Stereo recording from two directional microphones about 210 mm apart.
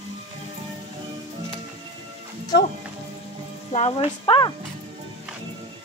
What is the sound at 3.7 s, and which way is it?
Speech, 30° left (ahead or behind).